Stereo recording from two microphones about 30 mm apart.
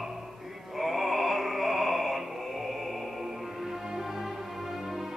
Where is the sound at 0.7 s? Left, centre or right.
Centre.